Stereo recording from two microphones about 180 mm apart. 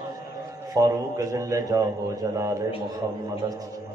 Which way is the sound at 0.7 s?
15° right (ahead or behind).